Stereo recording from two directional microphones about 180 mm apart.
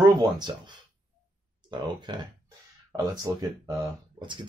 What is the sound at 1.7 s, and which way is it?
Speech, 25° right (ahead or behind).